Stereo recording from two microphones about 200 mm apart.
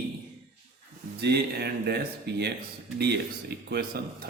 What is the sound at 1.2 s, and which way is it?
Speech, 55° right (ahead or behind).